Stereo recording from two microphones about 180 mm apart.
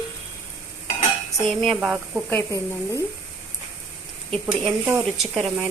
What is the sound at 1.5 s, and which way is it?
Speech, centre (ahead or behind).